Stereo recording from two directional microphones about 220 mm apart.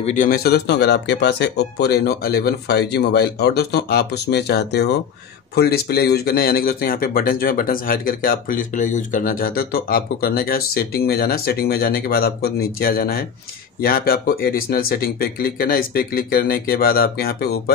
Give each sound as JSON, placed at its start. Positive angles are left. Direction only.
{"t": 0.0, "sound": "speech", "side_deg": 35}